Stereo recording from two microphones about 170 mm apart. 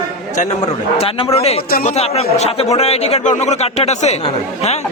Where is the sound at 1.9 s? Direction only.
40° left (ahead or behind).